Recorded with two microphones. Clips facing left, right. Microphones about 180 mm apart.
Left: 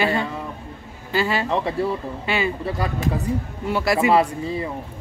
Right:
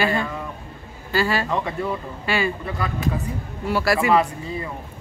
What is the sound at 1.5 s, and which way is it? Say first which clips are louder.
Speech: left 3 dB; 35° left (ahead or behind).